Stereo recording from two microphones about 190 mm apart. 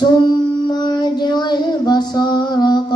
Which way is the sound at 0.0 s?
20° left (ahead or behind).